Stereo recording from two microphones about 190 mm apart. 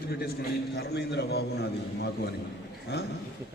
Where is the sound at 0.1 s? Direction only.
55° left (ahead or behind).